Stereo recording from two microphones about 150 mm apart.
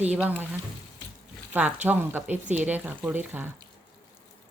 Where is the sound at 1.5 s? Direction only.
10° right (ahead or behind).